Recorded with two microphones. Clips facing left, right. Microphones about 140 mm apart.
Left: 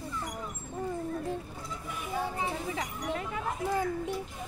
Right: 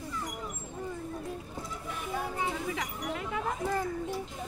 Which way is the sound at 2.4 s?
35° left (ahead or behind).